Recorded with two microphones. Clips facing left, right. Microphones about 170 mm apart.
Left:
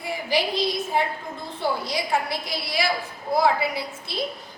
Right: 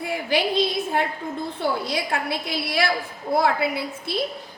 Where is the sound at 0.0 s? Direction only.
60° right (ahead or behind).